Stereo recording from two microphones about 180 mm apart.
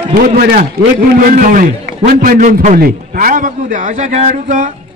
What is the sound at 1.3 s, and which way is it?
A man's voice, 50° right (ahead or behind).